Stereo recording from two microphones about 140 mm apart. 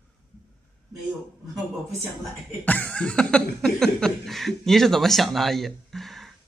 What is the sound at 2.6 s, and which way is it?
Speech, 10° left (ahead or behind).